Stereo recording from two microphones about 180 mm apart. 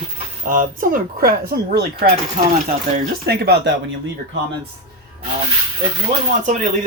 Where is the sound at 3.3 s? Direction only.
65° right (ahead or behind).